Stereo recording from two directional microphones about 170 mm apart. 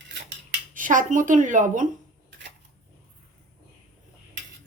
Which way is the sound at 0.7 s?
50° right (ahead or behind).